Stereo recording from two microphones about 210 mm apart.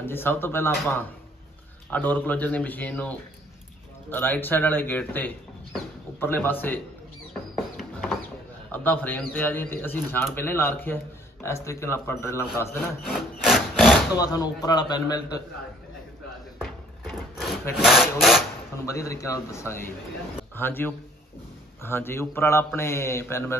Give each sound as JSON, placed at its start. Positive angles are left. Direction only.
{"t": 0.0, "sound": "speech", "side_deg": 10}
{"t": 7.5, "sound": "a sound", "side_deg": 0}
{"t": 8.7, "sound": "speech", "side_deg": 10}
{"t": 13.0, "sound": "wood", "side_deg": 0}
{"t": 14.1, "sound": "speech", "side_deg": 20}
{"t": 16.5, "sound": "a sound", "side_deg": 0}
{"t": 17.7, "sound": "wood", "side_deg": 0}
{"t": 18.9, "sound": "speech", "side_deg": 15}